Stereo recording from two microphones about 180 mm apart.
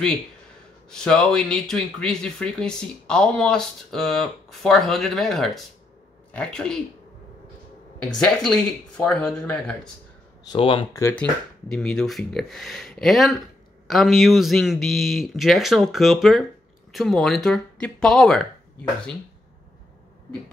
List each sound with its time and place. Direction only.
0.8 s speech: 5° left (ahead or behind)
8.0 s speech: 5° left (ahead or behind)
10.4 s speech: 25° left (ahead or behind)
11.0 s speech: 15° left (ahead or behind)
11.7 s speech: 5° left (ahead or behind)